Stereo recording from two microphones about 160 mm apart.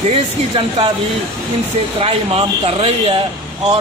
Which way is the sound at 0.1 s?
35° right (ahead or behind).